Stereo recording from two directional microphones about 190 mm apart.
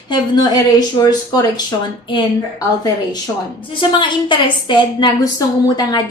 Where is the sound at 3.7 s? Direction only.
25° left (ahead or behind).